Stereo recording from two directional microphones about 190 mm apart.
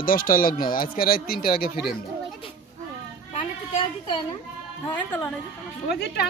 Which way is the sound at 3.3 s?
25° left (ahead or behind).